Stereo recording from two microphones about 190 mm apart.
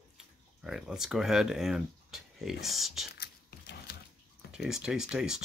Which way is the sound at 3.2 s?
60° left (ahead or behind).